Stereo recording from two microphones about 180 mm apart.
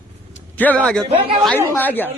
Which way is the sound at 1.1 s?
35° right (ahead or behind).